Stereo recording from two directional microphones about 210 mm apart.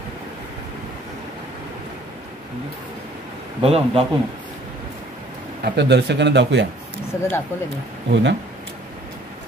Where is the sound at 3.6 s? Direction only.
30° right (ahead or behind).